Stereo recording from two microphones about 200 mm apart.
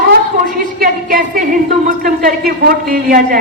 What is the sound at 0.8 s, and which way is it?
A woman's voice, 45° right (ahead or behind).